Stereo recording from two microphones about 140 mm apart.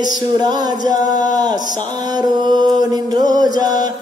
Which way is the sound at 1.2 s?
30° right (ahead or behind).